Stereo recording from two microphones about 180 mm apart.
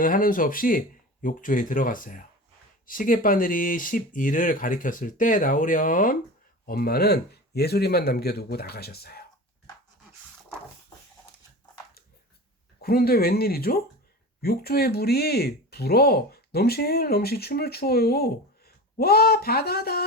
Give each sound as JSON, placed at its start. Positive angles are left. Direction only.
{"t": 0.0, "sound": "speech", "side_deg": 50}
{"t": 12.8, "sound": "speech", "side_deg": 55}